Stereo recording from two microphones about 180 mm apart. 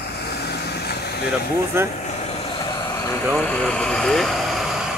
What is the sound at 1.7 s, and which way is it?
Speech, 15° right (ahead or behind).